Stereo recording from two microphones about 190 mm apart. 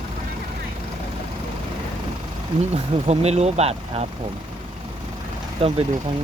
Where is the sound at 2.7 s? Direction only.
35° right (ahead or behind).